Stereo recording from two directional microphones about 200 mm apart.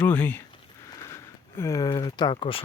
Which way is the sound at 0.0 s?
10° left (ahead or behind).